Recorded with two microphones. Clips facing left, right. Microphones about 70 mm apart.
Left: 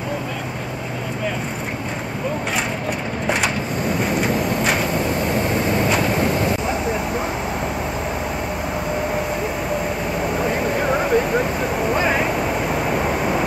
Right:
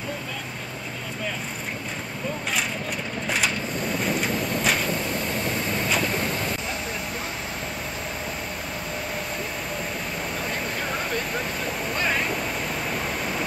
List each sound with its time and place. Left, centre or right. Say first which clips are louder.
3.3 s vehicle: left 5 dB; centre
5.2 s vehicle: left 7 dB; left
5.7 s vehicle: left 5 dB; centre
6.1 s a sound: left 8 dB; centre
11.0 s a sound: left 10 dB; centre
11.9 s vehicle: left 6 dB; centre
12.3 s waves: left 7 dB; left